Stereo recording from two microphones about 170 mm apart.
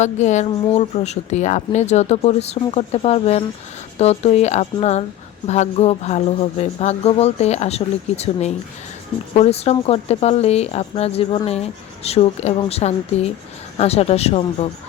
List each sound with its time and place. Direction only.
0.0 s speech: 45° left (ahead or behind)